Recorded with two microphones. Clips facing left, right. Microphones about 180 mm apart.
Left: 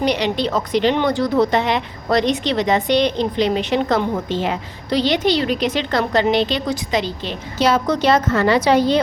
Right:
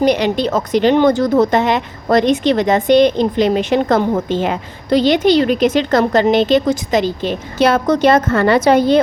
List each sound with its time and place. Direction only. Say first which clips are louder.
0.0 s speech: right 5 dB; 50° right (ahead or behind)